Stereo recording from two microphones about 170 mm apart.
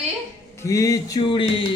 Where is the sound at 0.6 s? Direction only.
20° left (ahead or behind).